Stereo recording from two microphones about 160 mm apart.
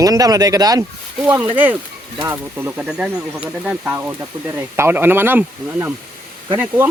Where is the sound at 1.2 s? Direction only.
10° right (ahead or behind).